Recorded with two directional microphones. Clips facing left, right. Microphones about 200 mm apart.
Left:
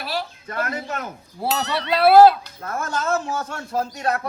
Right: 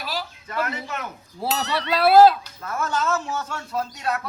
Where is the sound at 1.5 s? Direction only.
Centre (ahead or behind).